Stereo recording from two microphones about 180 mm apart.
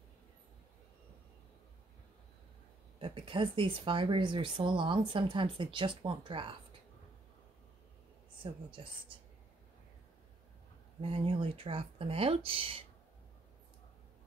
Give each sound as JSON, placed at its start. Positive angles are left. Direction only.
{"t": 3.0, "sound": "speech", "side_deg": -30}
{"t": 8.4, "sound": "speech", "side_deg": -30}
{"t": 11.0, "sound": "speech", "side_deg": -30}